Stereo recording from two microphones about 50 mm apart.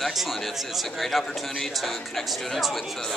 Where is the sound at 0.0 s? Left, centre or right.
Centre.